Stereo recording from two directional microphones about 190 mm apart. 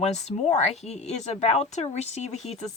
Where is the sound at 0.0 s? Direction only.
35° left (ahead or behind).